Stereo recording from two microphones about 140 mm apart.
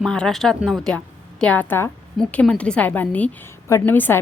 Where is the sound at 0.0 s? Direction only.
5° left (ahead or behind).